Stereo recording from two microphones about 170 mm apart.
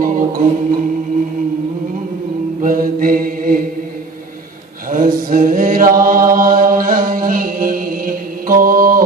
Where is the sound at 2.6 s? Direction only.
55° right (ahead or behind).